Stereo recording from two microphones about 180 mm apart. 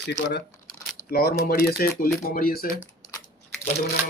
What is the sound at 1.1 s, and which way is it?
Speech, 60° left (ahead or behind).